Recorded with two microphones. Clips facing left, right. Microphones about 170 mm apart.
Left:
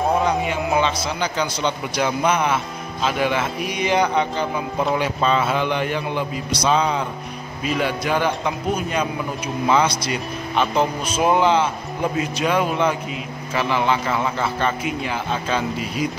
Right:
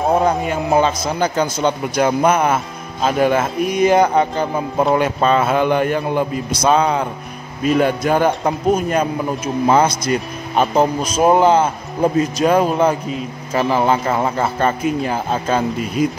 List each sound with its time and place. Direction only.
0.5 s speech: 40° right (ahead or behind)